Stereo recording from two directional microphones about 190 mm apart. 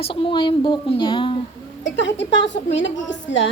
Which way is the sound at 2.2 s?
70° left (ahead or behind).